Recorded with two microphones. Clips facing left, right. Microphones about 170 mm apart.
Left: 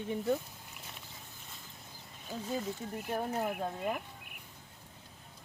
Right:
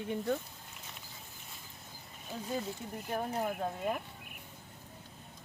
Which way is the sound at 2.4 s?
Centre (ahead or behind).